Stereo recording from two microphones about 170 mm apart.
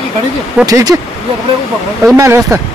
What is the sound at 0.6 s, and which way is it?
Speech, 20° right (ahead or behind).